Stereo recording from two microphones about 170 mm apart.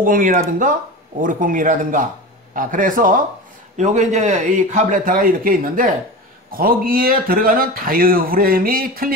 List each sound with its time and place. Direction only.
0.0 s a man's voice: 50° right (ahead or behind)